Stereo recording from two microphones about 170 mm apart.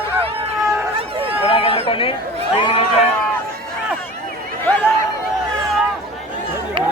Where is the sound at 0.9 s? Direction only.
35° right (ahead or behind).